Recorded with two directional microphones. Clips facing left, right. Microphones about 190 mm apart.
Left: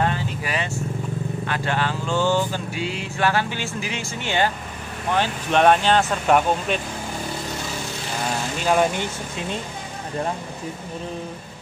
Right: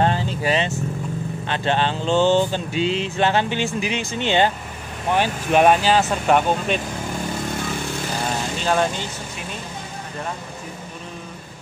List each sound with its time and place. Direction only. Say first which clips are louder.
0.0 s vehicle: right 4 dB; 30° right (ahead or behind)
1.4 s speech: right 4 dB; 25° right (ahead or behind)
5.1 s speech: right 2 dB; 10° right (ahead or behind)
8.6 s speech: left 2 dB; 15° left (ahead or behind)